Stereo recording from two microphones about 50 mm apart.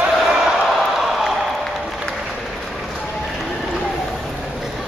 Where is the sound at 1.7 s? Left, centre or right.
Centre.